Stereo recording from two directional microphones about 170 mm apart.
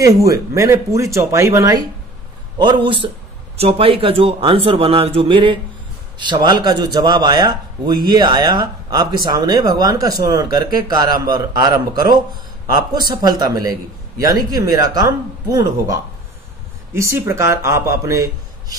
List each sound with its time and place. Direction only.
0.0 s a man's voice: 20° right (ahead or behind)